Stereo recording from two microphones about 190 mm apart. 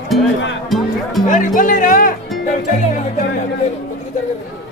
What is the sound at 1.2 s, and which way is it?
Speech, 45° left (ahead or behind).